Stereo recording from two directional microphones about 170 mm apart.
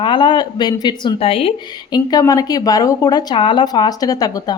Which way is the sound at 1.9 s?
20° left (ahead or behind).